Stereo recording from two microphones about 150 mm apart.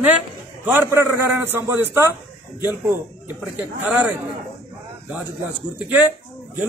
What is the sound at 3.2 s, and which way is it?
Speech, 10° right (ahead or behind).